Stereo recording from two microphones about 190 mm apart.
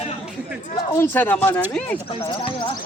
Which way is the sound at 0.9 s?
10° left (ahead or behind).